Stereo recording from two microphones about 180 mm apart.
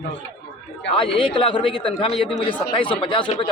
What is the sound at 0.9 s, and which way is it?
Speech, 30° left (ahead or behind).